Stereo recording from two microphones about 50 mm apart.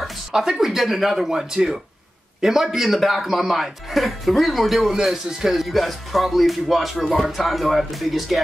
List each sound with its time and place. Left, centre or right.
0.3 s speech: centre